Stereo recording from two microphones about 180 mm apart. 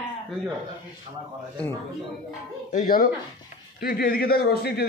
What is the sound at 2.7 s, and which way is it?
A man's voice, 50° left (ahead or behind).